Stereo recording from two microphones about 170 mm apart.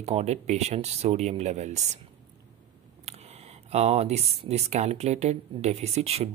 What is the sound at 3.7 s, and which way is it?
Speech, 40° right (ahead or behind).